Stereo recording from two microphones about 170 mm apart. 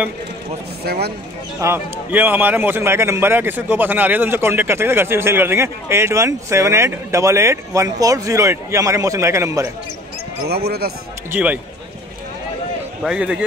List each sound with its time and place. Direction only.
0.8 s speech: 70° right (ahead or behind)
1.6 s a man's voice: 15° right (ahead or behind)
10.5 s speech: 70° right (ahead or behind)
11.3 s a man's voice: 10° right (ahead or behind)
13.0 s a man's voice: 5° right (ahead or behind)